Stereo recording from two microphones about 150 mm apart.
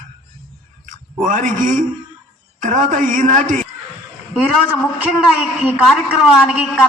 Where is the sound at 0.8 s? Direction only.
60° right (ahead or behind).